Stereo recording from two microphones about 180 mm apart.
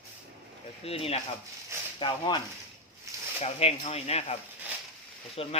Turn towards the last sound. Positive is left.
turn(degrees=30)  # may be behind; listen again after turning